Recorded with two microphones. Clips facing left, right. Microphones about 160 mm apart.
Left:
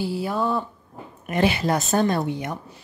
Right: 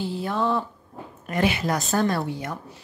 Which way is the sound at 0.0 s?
5° left (ahead or behind).